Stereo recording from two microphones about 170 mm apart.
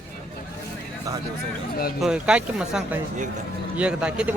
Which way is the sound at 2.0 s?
5° right (ahead or behind).